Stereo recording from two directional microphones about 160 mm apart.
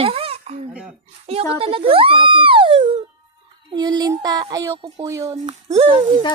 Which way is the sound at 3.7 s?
25° right (ahead or behind).